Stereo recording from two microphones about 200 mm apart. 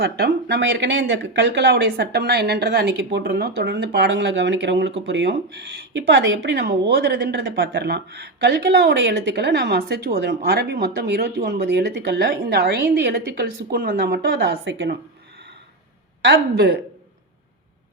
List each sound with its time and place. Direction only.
0.0 s speech: 55° right (ahead or behind)
16.2 s speech: 55° right (ahead or behind)